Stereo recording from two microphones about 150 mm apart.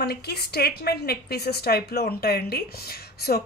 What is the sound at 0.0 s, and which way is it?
A woman's voice, 90° left.